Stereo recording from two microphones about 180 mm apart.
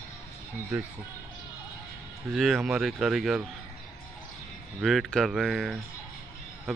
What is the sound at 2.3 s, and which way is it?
Speech, centre (ahead or behind).